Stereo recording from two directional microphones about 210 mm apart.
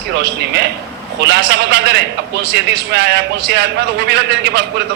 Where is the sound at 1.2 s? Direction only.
55° right (ahead or behind).